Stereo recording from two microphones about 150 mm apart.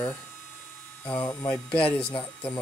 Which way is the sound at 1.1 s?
30° left (ahead or behind).